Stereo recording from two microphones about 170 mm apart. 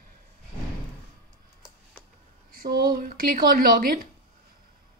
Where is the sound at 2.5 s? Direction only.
65° right (ahead or behind).